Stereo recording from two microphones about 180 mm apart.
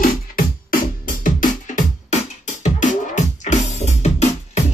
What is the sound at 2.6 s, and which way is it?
Music, 40° left (ahead or behind).